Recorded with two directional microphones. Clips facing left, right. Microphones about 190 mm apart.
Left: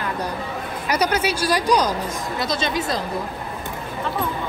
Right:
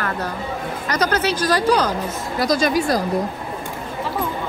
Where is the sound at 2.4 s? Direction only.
25° left (ahead or behind).